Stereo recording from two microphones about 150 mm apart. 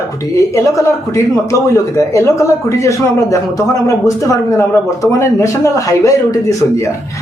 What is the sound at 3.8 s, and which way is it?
A woman's voice, 20° left (ahead or behind).